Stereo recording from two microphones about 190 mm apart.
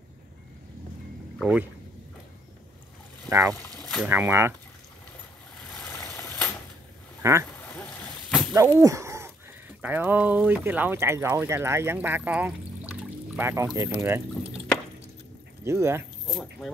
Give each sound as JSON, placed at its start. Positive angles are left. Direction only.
{"t": 1.4, "sound": "speech", "side_deg": -5}
{"t": 3.3, "sound": "speech", "side_deg": -20}
{"t": 5.8, "sound": "vehicle", "side_deg": 10}
{"t": 7.2, "sound": "speech", "side_deg": -15}
{"t": 8.5, "sound": "speech", "side_deg": -15}
{"t": 15.6, "sound": "speech", "side_deg": -15}
{"t": 16.3, "sound": "speech", "side_deg": 0}